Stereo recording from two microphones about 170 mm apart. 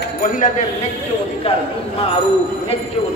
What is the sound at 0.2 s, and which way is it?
Speech, 45° left (ahead or behind).